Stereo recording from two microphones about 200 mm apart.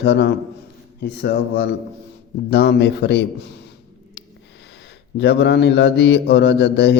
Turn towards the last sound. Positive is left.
turn(degrees=55)  # may be behind; listen again after turning